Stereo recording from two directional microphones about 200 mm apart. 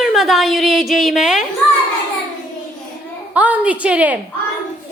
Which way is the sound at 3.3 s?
5° right (ahead or behind).